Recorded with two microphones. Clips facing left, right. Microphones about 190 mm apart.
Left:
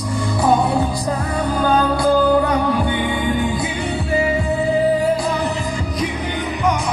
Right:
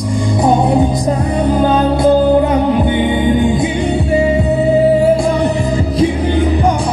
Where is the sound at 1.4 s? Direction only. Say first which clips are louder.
Right 4 dB; 25° right (ahead or behind).